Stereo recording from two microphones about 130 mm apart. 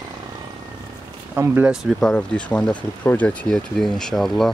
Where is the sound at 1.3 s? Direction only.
15° right (ahead or behind).